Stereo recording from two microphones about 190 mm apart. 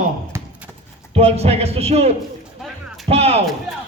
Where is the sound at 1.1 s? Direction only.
35° right (ahead or behind).